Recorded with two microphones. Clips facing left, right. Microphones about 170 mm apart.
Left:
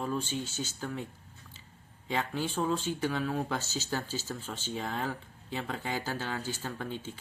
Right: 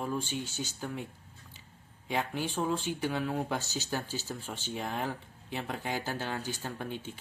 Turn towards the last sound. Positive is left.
turn(degrees=-15)  # may be behind; listen again after turning